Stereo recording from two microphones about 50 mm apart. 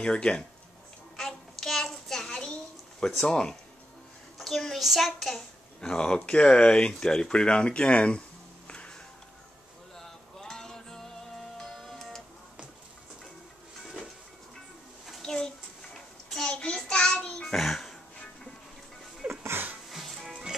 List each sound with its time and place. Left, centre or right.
0.0 s speech: centre
1.1 s a sound: centre
3.3 s speech: centre
4.4 s a child's voice: centre
5.8 s speech: centre
8.6 s music: left
9.9 s music: centre
15.2 s a sound: centre
16.4 s child singing: centre
17.6 s throat clearing: centre
19.2 s a sound: right
19.9 s music: centre